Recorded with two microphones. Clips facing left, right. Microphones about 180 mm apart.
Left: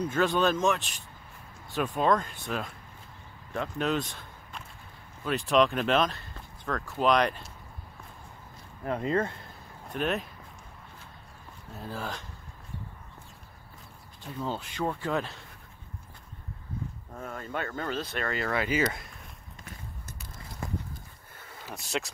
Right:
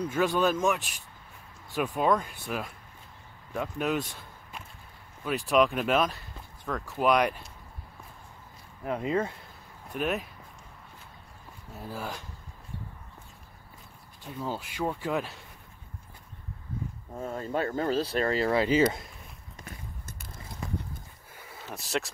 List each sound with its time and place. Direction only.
0.1 s speech: 10° right (ahead or behind)
8.8 s speech: 5° right (ahead or behind)
11.8 s speech: 10° right (ahead or behind)
14.2 s speech: 10° right (ahead or behind)
17.1 s speech: 25° right (ahead or behind)
21.6 s speech: centre (ahead or behind)